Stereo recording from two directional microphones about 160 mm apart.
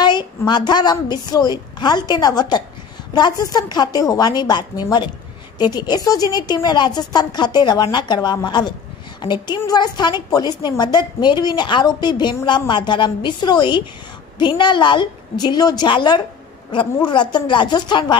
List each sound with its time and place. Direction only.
0.0 s a woman's voice: 25° left (ahead or behind)